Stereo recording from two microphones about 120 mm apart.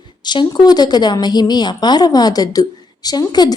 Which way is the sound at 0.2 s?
35° left (ahead or behind).